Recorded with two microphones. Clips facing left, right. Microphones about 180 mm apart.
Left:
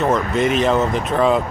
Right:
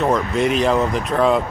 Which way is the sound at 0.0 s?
Centre (ahead or behind).